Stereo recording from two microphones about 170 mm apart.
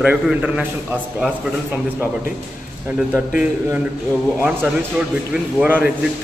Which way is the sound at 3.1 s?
10° right (ahead or behind).